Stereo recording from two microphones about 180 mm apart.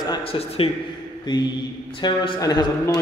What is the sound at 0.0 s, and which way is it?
A man's voice, 30° left (ahead or behind).